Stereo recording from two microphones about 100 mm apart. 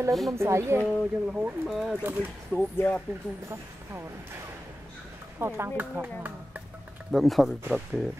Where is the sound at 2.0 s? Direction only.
20° right (ahead or behind).